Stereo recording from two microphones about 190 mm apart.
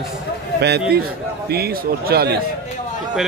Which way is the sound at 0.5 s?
60° right (ahead or behind).